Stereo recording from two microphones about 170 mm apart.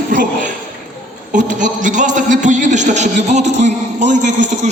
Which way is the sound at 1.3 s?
50° right (ahead or behind).